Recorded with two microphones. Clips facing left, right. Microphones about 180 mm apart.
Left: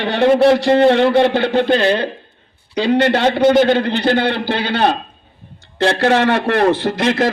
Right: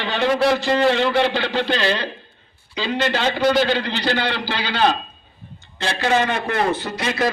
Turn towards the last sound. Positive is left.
turn(degrees=60)  # may be behind; listen again after turning